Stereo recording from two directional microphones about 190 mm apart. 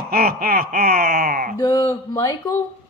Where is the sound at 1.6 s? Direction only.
20° left (ahead or behind).